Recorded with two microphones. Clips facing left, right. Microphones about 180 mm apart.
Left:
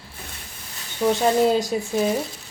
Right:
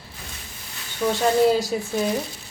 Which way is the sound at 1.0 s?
20° left (ahead or behind).